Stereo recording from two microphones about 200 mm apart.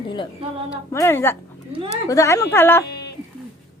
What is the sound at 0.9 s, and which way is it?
Speech, 15° left (ahead or behind).